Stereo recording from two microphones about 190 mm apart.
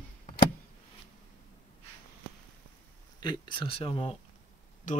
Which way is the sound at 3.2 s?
25° left (ahead or behind).